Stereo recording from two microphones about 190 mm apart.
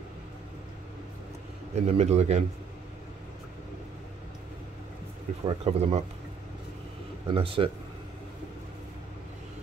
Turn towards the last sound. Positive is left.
turn(degrees=-30)  # may be behind; listen again after turning